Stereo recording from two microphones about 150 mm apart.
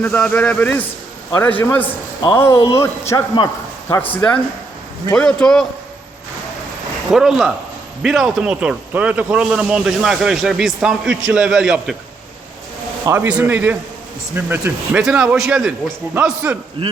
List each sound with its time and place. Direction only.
0.0 s a man's voice: 10° left (ahead or behind)
7.1 s a man's voice: 5° right (ahead or behind)
13.1 s a man's voice: 10° right (ahead or behind)